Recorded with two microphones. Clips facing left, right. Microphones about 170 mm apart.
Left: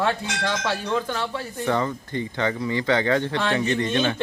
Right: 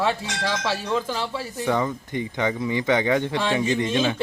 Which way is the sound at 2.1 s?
15° right (ahead or behind).